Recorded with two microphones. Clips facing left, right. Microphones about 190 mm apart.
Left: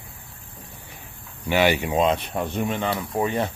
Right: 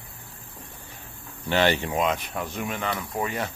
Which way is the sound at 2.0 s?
30° left (ahead or behind).